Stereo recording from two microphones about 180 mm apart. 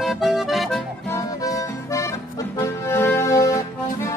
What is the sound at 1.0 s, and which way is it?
Accordion, 20° left (ahead or behind).